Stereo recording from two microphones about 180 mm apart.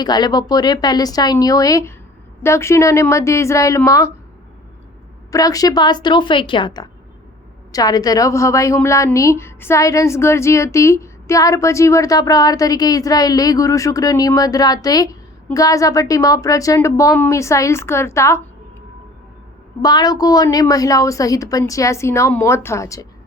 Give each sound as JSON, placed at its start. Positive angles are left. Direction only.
{"t": 0.0, "sound": "a woman's voice", "side_deg": 25}
{"t": 5.3, "sound": "a woman's voice", "side_deg": 20}
{"t": 19.8, "sound": "a woman's voice", "side_deg": 20}